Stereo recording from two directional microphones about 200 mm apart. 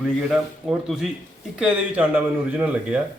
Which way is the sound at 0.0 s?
Centre (ahead or behind).